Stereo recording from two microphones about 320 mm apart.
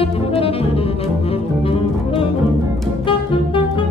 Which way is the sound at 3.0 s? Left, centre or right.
Centre.